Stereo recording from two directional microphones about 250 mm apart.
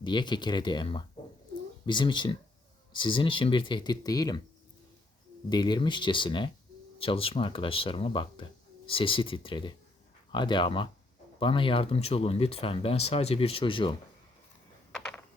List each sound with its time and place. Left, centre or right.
0.0 s speech: centre
5.5 s speech: centre